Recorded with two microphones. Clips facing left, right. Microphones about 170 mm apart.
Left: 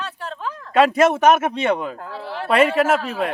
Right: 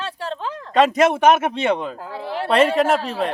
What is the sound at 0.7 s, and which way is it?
Speech, 5° left (ahead or behind).